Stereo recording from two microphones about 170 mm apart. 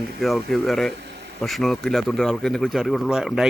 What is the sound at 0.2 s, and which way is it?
Speech, centre (ahead or behind).